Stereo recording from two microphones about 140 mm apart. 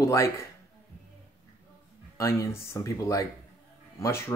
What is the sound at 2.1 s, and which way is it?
Speech, 20° left (ahead or behind).